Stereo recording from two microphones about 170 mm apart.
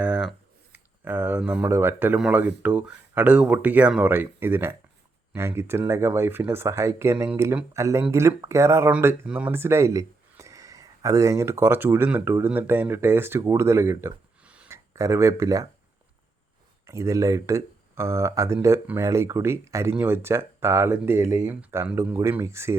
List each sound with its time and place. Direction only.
0.0 s a sound: 5° right (ahead or behind)
2.6 s speech: 10° right (ahead or behind)
16.8 s speech: 15° right (ahead or behind)